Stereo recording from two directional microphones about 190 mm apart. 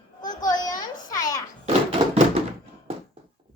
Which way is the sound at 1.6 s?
35° right (ahead or behind).